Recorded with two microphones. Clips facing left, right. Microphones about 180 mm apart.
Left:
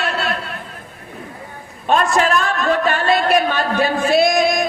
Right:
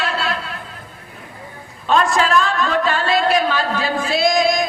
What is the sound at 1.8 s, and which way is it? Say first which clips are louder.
A man's voice: left 1 dB; 55° left (ahead or behind).